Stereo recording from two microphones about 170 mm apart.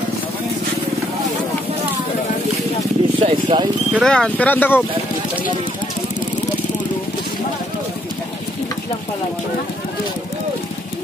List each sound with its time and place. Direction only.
3.2 s vehicle: 30° right (ahead or behind)
3.9 s speech: centre (ahead or behind)